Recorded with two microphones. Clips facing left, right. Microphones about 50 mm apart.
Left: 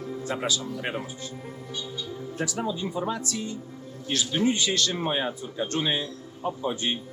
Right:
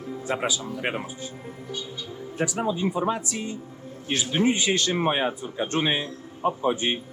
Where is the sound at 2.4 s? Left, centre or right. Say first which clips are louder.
Right 5 dB; right.